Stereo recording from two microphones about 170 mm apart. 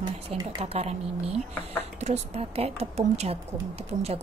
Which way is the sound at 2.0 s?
40° right (ahead or behind).